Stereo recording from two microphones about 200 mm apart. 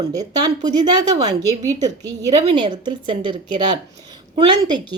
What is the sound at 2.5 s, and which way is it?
A woman's voice, 20° right (ahead or behind).